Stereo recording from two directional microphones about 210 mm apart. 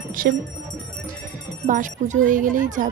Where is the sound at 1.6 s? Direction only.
35° right (ahead or behind).